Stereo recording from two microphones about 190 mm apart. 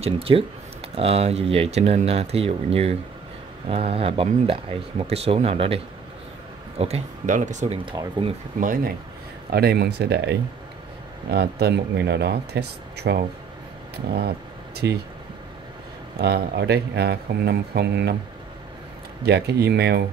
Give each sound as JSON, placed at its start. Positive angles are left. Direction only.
{"t": 0.0, "sound": "speech", "side_deg": -30}
{"t": 6.8, "sound": "speech", "side_deg": -35}
{"t": 7.8, "sound": "speech", "side_deg": -25}
{"t": 8.5, "sound": "speech", "side_deg": -45}
{"t": 14.8, "sound": "speech", "side_deg": -65}
{"t": 16.2, "sound": "speech", "side_deg": -60}
{"t": 19.2, "sound": "speech", "side_deg": -60}